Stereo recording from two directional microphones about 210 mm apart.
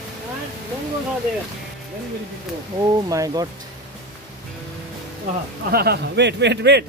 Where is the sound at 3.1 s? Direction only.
15° right (ahead or behind).